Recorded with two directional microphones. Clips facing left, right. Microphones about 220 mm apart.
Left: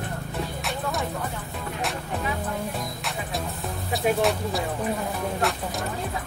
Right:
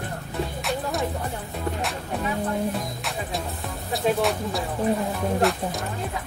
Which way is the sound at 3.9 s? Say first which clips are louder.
Even; centre (ahead or behind).